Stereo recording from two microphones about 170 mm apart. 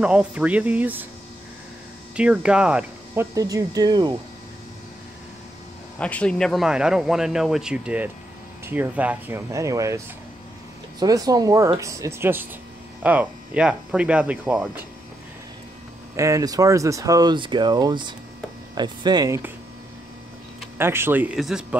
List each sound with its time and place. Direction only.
0.0 s speech: 5° right (ahead or behind)
2.1 s insect: 5° right (ahead or behind)
3.3 s speech: 20° right (ahead or behind)
5.9 s speech: 10° left (ahead or behind); by 14.9 s 10° right (ahead or behind)
16.2 s speech: 20° right (ahead or behind)
20.7 s speech: 15° right (ahead or behind)